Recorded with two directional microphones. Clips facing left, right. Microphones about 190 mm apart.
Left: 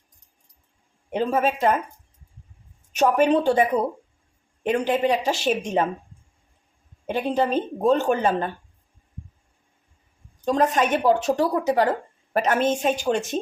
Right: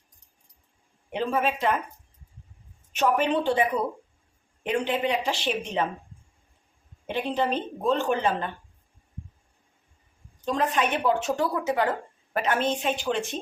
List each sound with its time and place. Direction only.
1.1 s speech: 45° left (ahead or behind)
2.9 s speech: 40° left (ahead or behind)
7.1 s speech: 45° left (ahead or behind)
10.4 s speech: 45° left (ahead or behind)